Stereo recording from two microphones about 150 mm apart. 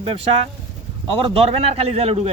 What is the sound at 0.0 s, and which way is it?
A man's voice, 40° right (ahead or behind).